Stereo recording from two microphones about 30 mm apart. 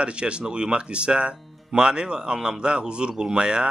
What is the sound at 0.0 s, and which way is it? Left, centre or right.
Speech, right.